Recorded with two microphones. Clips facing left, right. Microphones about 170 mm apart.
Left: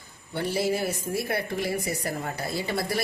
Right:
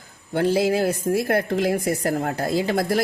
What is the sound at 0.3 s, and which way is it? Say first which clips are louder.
Speech: right 7 dB; 90° right.